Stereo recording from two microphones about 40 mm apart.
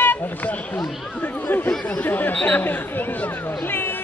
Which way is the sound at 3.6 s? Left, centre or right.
Left.